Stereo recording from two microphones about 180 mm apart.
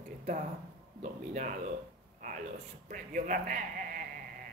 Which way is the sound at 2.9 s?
45° right (ahead or behind).